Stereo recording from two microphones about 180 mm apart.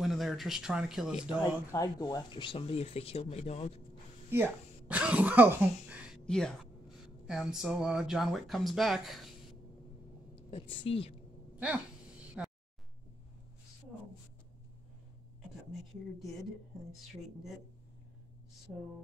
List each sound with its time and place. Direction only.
0.0 s speech: centre (ahead or behind)
1.4 s speech: 20° left (ahead or behind); by 3.7 s 35° left (ahead or behind)
4.3 s speech: 10° right (ahead or behind)
6.2 s a woman's voice: 5° left (ahead or behind)
10.5 s speech: 30° left (ahead or behind)
11.6 s a sound: 5° right (ahead or behind)